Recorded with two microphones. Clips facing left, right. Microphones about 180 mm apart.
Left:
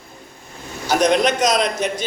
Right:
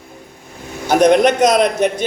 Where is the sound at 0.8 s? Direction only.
55° right (ahead or behind).